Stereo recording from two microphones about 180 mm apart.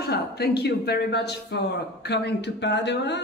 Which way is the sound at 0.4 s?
65° left (ahead or behind).